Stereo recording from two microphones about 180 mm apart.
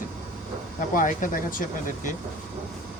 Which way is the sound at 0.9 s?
50° left (ahead or behind).